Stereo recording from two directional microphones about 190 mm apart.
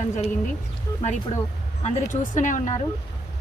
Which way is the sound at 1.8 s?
40° left (ahead or behind).